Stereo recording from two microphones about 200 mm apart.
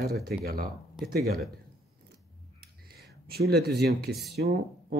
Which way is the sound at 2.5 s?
50° right (ahead or behind).